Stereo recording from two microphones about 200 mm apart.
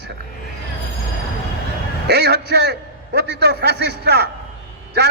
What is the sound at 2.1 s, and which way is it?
A man's voice, 55° right (ahead or behind).